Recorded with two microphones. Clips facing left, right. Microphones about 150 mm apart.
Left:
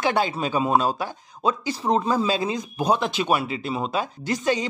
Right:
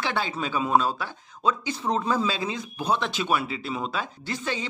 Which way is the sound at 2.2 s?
45° left (ahead or behind).